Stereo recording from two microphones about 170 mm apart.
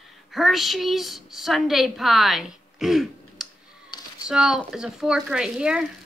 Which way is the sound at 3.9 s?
25° left (ahead or behind).